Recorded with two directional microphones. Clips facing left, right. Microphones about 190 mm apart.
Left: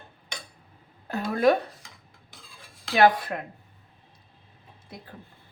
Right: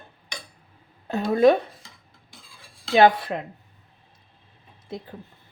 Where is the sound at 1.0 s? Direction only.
25° right (ahead or behind).